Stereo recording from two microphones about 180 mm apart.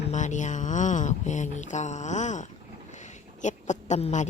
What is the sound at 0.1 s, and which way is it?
A woman's voice, 40° left (ahead or behind).